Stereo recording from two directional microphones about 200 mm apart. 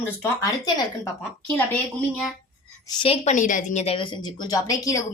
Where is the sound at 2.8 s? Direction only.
25° left (ahead or behind).